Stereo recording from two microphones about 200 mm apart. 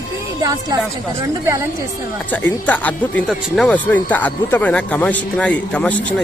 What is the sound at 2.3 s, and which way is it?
Speech, 10° left (ahead or behind).